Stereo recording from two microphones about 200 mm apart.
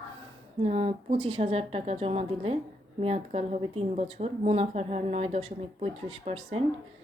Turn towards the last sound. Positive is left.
turn(degrees=-30)  # may be behind; listen again after turning